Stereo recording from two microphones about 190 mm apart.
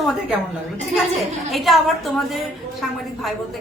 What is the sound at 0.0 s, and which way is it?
A woman's voice, centre (ahead or behind).